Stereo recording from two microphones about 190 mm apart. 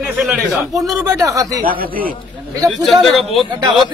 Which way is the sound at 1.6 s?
50° right (ahead or behind).